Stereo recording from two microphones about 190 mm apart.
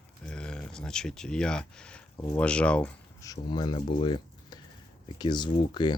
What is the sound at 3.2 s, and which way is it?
Speech, 20° left (ahead or behind).